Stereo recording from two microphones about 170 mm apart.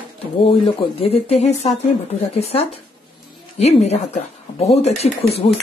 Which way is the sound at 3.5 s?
40° left (ahead or behind).